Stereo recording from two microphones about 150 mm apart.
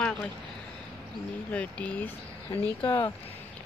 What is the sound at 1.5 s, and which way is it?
Speech, 10° left (ahead or behind).